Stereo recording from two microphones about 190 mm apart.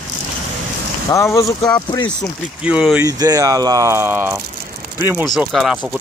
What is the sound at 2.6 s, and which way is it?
Speech, 5° right (ahead or behind).